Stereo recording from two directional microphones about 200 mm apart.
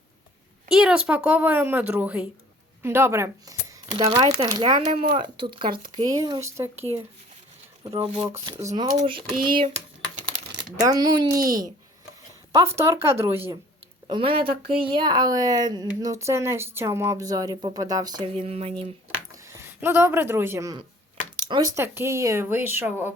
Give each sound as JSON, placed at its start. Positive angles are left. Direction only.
{"t": 0.7, "sound": "speech", "side_deg": -5}
{"t": 3.9, "sound": "speech", "side_deg": -25}
{"t": 7.9, "sound": "speech", "side_deg": -25}
{"t": 8.3, "sound": "speech", "side_deg": -15}
{"t": 14.1, "sound": "speech", "side_deg": -25}
{"t": 19.5, "sound": "speech", "side_deg": -15}